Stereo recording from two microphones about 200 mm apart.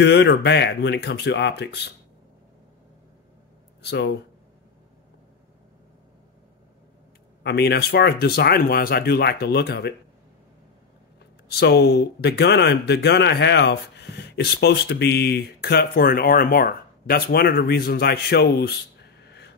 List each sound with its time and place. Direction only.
0.0 s speech: 60° left (ahead or behind)
3.8 s speech: 60° left (ahead or behind)
7.4 s speech: 55° left (ahead or behind)
11.4 s speech: 50° left (ahead or behind)
19.2 s a sound: 55° left (ahead or behind)